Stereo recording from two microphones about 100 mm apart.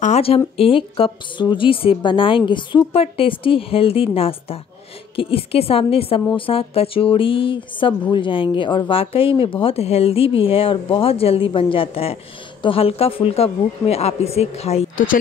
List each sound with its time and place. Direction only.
0.1 s speech: 75° left (ahead or behind)
0.6 s speech: 65° left (ahead or behind)
2.9 s a woman's voice: 70° left (ahead or behind); by 14.9 s 90° left